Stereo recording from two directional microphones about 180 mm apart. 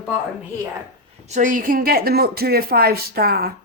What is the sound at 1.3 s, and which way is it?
Speech, 45° right (ahead or behind).